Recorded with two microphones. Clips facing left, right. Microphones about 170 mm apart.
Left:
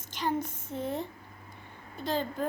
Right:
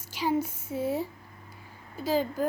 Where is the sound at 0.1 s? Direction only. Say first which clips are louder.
Right 4 dB; 5° right (ahead or behind).